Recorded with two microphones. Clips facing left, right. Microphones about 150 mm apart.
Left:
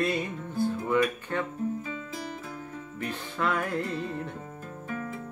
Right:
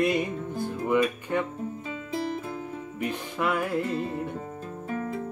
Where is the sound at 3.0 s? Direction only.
10° right (ahead or behind).